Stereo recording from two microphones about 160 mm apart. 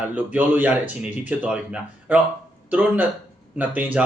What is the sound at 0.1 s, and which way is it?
A man's voice, 10° right (ahead or behind).